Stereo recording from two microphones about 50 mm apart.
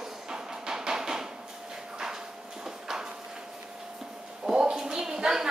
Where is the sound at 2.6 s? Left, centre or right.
Centre.